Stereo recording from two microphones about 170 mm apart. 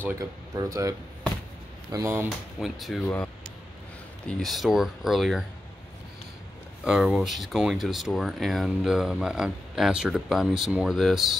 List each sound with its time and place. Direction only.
0.2 s speech: 20° right (ahead or behind)
2.6 s speech: centre (ahead or behind)
4.3 s speech: centre (ahead or behind)
6.8 s speech: 5° right (ahead or behind)